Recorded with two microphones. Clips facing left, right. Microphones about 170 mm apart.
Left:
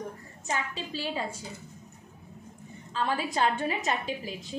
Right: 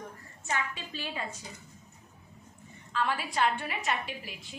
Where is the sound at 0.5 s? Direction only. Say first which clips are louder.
Left 2 dB; 30° left (ahead or behind).